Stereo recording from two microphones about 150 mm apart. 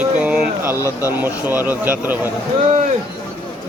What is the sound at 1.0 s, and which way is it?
Speech, 15° right (ahead or behind).